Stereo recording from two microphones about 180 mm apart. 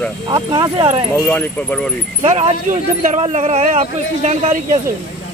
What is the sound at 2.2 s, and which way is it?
Speech, 35° right (ahead or behind).